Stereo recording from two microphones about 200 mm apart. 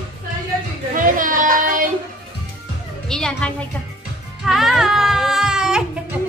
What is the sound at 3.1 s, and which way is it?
Music, 5° left (ahead or behind).